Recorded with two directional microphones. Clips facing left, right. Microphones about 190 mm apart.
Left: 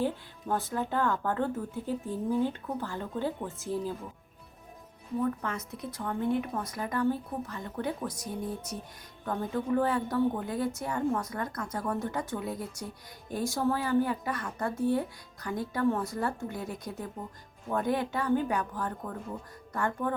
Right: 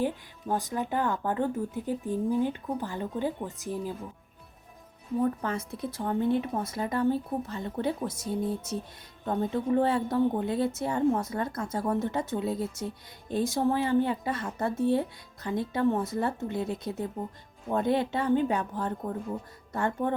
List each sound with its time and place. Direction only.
0.0 s speech: 15° right (ahead or behind)
5.2 s speech: 30° right (ahead or behind)